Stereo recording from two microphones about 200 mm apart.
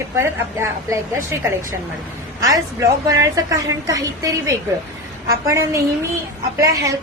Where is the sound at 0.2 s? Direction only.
15° right (ahead or behind).